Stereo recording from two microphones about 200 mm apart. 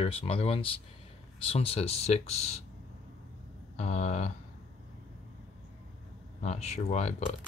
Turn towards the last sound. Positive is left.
turn(degrees=35)  # may be behind; listen again after turning